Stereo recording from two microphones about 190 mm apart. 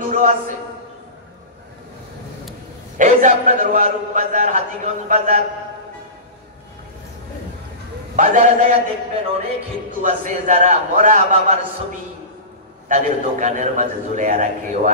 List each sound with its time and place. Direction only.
0.1 s a man's voice: 40° right (ahead or behind)
3.0 s a man's voice: 40° right (ahead or behind)
8.2 s a man's voice: 40° right (ahead or behind)
12.8 s a man's voice: 40° right (ahead or behind)